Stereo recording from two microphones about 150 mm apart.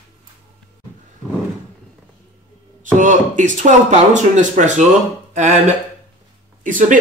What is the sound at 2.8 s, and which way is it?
Speech, 60° right (ahead or behind).